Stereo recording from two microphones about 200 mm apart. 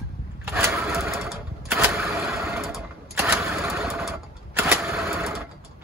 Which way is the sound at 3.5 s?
Centre (ahead or behind).